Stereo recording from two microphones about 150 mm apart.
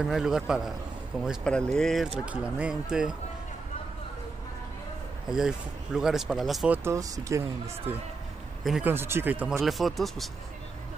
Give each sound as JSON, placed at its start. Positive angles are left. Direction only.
{"t": 0.0, "sound": "speech", "side_deg": -5}
{"t": 5.3, "sound": "speech", "side_deg": -5}
{"t": 6.8, "sound": "speech", "side_deg": -20}
{"t": 8.8, "sound": "speech", "side_deg": -15}
{"t": 9.6, "sound": "speech", "side_deg": 0}